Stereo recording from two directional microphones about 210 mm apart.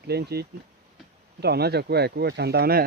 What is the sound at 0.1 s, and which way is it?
Speech, 50° right (ahead or behind).